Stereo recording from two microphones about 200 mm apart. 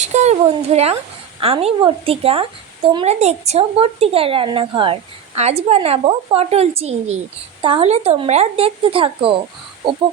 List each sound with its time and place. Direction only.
0.0 s a woman's voice: 35° right (ahead or behind)